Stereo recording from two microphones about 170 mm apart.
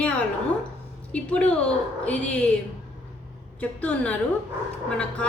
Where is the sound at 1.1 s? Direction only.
5° left (ahead or behind).